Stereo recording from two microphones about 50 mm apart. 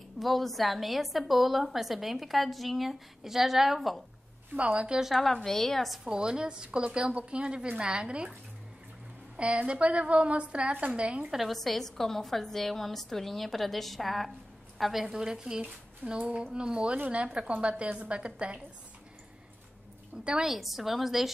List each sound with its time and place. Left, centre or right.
0.2 s a woman's voice: centre
4.6 s a woman's voice: right
5.0 s a woman's voice: centre
6.0 s a woman's voice: centre
9.4 s a woman's voice: right
11.3 s a woman's voice: centre; by 18.6 s right
20.4 s a woman's voice: centre